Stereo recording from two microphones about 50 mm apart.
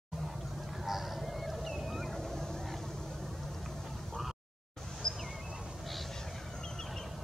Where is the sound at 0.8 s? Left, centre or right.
Centre.